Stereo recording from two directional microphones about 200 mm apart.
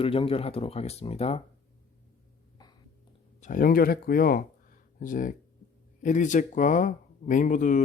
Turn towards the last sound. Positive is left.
turn(degrees=40)  # may be behind; listen again after turning